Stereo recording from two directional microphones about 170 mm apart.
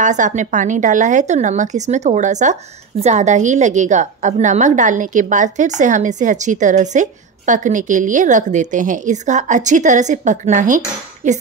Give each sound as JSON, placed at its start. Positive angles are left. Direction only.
{"t": 0.0, "sound": "a woman's voice", "side_deg": -45}